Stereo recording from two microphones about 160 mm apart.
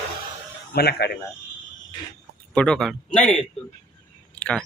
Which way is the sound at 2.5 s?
5° left (ahead or behind).